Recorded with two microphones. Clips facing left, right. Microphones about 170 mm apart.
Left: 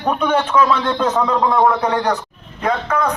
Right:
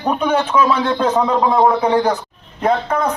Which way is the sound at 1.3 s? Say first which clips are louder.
Right 1 dB; 25° right (ahead or behind).